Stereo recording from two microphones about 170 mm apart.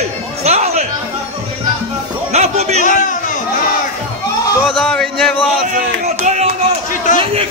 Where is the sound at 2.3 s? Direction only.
40° right (ahead or behind).